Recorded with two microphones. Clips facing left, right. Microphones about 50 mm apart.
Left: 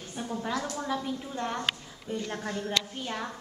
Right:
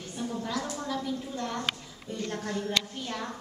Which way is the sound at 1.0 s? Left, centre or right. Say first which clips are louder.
Even; left.